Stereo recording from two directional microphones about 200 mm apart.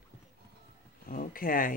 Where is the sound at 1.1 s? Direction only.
45° left (ahead or behind).